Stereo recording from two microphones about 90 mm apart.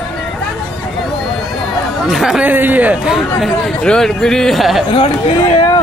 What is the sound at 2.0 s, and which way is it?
Speech, centre (ahead or behind).